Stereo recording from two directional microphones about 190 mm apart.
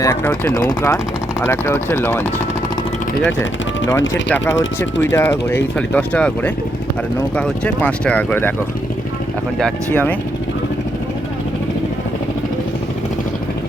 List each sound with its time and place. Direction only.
0.0 s speech: 10° left (ahead or behind)
4.1 s speech: 10° left (ahead or behind)
9.6 s speech: 5° left (ahead or behind)